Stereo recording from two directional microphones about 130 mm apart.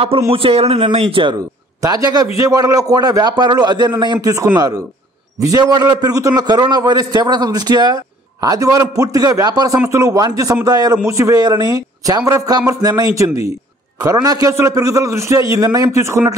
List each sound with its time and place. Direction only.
0.3 s speech: 45° right (ahead or behind)
1.8 s a man's voice: 30° right (ahead or behind)